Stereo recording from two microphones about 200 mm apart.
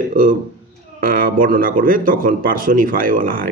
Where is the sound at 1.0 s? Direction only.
45° right (ahead or behind).